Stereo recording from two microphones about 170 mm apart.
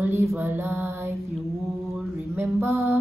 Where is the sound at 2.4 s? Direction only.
15° right (ahead or behind).